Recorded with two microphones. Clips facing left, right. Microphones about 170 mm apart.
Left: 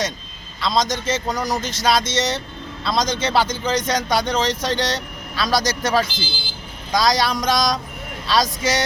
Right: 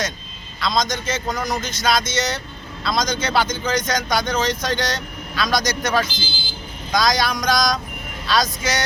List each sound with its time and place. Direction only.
0.6 s speech: 30° left (ahead or behind)